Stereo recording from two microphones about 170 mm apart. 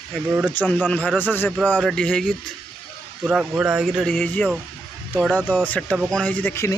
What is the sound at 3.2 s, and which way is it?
A man's voice, 5° right (ahead or behind).